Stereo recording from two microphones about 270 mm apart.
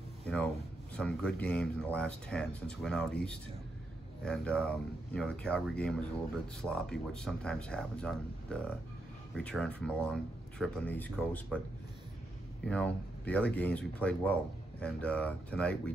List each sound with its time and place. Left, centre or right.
0.9 s speech: centre
4.2 s speech: centre
12.6 s speech: centre